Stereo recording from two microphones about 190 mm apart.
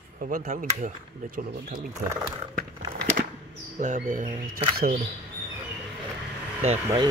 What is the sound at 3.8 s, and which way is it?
Speech, 40° right (ahead or behind).